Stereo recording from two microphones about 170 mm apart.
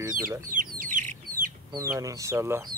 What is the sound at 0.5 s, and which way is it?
Chicken, 55° right (ahead or behind).